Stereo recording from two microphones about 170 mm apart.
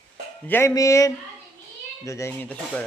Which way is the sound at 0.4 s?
15° left (ahead or behind).